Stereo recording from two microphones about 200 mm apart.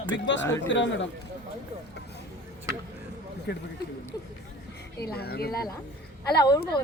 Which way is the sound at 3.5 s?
55° left (ahead or behind).